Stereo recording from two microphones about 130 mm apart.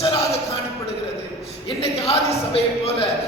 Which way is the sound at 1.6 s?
45° left (ahead or behind).